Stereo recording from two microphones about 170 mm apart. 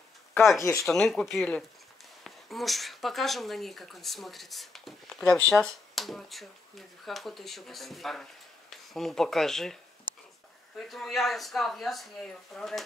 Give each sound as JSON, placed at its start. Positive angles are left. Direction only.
{"t": 0.6, "sound": "speech", "side_deg": 15}
{"t": 0.8, "sound": "speech", "side_deg": 0}
{"t": 10.8, "sound": "speech", "side_deg": 0}